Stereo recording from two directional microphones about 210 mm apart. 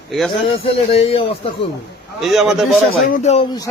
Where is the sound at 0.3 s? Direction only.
25° left (ahead or behind).